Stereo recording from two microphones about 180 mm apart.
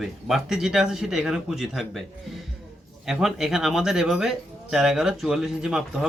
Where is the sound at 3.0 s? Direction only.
Centre (ahead or behind).